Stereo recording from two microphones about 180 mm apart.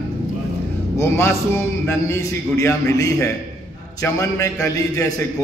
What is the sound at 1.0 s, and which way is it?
A man's voice, 15° left (ahead or behind).